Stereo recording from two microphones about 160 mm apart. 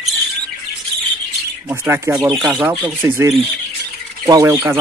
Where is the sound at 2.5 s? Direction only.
10° right (ahead or behind).